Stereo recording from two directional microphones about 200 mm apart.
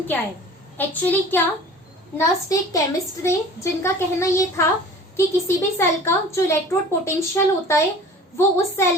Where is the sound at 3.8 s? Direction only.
15° left (ahead or behind).